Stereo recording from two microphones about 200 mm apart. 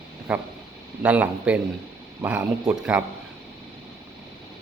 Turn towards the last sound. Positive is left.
turn(degrees=-5)  # may be behind; listen again after turning